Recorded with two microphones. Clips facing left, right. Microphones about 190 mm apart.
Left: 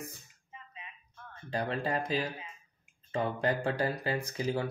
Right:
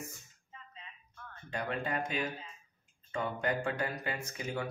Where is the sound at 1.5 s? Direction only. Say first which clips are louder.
Left 3 dB; 35° left (ahead or behind).